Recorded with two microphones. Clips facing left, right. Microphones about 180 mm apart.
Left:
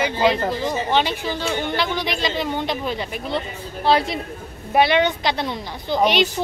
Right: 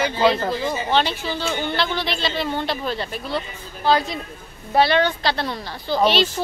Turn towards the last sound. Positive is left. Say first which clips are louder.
# even
turn(degrees=15)  # may be behind; listen again after turning